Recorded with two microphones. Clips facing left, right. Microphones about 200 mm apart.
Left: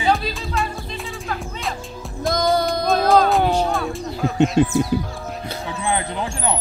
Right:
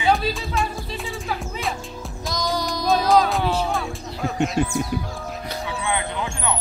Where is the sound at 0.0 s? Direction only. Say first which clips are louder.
Even; centre (ahead or behind).